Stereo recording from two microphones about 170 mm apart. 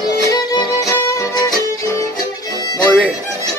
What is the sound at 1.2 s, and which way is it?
Music, 25° left (ahead or behind).